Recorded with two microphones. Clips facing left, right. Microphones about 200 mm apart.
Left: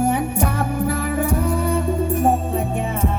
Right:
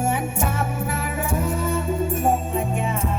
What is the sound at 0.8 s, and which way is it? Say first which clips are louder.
Music: left 6 dB; 35° left (ahead or behind).